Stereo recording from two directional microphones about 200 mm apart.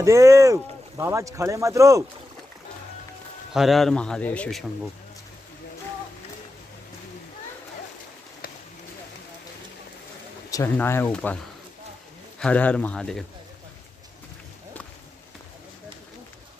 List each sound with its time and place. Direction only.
0.0 s speech: 15° right (ahead or behind)
3.5 s a man's voice: centre (ahead or behind)
10.5 s speech: 15° left (ahead or behind)
12.4 s a man's voice: 5° left (ahead or behind)